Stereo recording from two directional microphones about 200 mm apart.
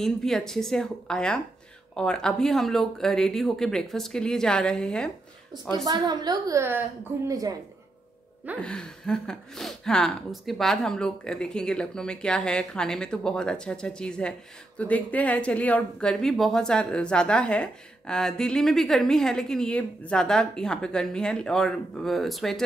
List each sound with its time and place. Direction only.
0.0 s speech: centre (ahead or behind)
5.9 s a woman's voice: 20° right (ahead or behind)
8.5 s speech: 5° left (ahead or behind)